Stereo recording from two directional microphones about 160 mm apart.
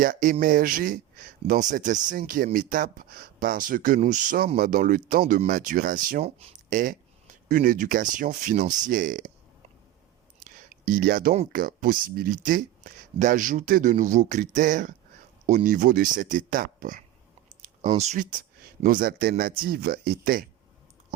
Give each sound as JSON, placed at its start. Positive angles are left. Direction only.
{"t": 0.0, "sound": "speech", "side_deg": -55}
{"t": 10.4, "sound": "a sound", "side_deg": -55}
{"t": 11.5, "sound": "speech", "side_deg": -60}
{"t": 17.6, "sound": "speech", "side_deg": -45}